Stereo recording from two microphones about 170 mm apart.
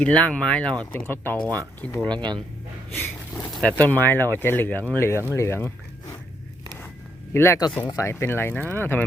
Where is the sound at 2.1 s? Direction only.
25° right (ahead or behind).